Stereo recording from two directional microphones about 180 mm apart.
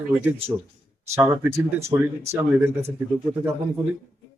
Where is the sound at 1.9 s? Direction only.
25° right (ahead or behind).